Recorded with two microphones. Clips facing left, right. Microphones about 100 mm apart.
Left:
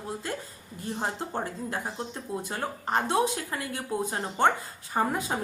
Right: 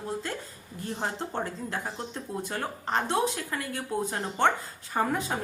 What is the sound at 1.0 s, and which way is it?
Speech, 15° left (ahead or behind).